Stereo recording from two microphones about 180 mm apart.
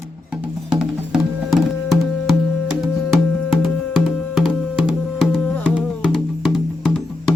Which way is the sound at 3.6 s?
Centre (ahead or behind).